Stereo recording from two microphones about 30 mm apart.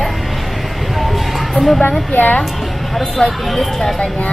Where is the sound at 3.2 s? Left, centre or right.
Left.